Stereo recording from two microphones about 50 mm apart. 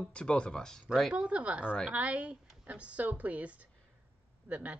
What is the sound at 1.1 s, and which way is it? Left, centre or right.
Speech, right.